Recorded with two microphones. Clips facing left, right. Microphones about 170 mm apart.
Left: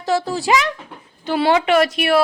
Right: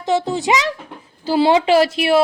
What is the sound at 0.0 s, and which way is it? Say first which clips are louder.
Speech: right 1 dB; 20° right (ahead or behind).